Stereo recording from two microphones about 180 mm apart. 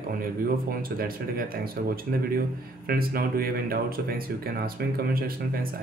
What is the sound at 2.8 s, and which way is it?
Speech, 55° right (ahead or behind).